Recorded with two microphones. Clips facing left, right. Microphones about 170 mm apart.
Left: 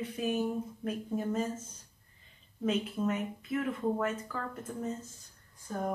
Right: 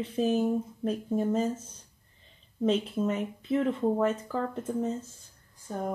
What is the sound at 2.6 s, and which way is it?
Speech, 30° right (ahead or behind).